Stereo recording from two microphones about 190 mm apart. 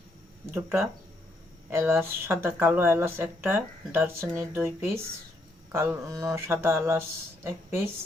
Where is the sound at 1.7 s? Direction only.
10° right (ahead or behind).